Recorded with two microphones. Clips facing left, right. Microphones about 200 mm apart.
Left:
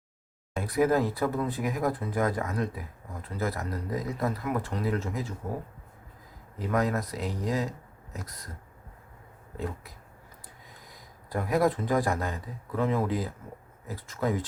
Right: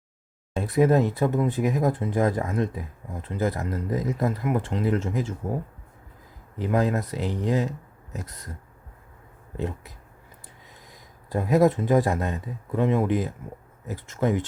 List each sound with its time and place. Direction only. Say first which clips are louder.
0.5 s speech: right 4 dB; 25° right (ahead or behind)
6.6 s speech: right 4 dB; 25° right (ahead or behind)
9.6 s speech: right 4 dB; 25° right (ahead or behind)
10.9 s speech: right 4 dB; 25° right (ahead or behind)